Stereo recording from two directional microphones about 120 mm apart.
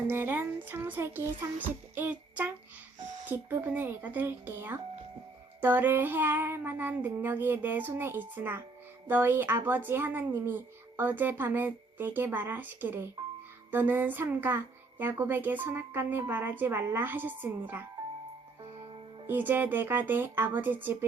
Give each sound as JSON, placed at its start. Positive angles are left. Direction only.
{"t": 0.1, "sound": "a woman's voice", "side_deg": -20}
{"t": 19.3, "sound": "a woman's voice", "side_deg": -15}